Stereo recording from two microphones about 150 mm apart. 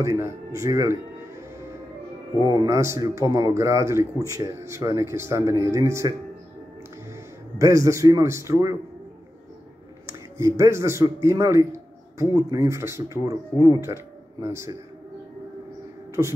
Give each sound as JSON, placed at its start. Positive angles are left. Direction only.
{"t": 0.0, "sound": "a man's voice", "side_deg": -20}
{"t": 2.4, "sound": "a man's voice", "side_deg": -25}
{"t": 7.5, "sound": "a man's voice", "side_deg": -20}
{"t": 10.3, "sound": "a man's voice", "side_deg": -20}
{"t": 16.2, "sound": "a man's voice", "side_deg": -20}